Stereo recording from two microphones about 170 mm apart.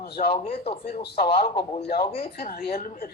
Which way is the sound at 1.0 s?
70° left (ahead or behind).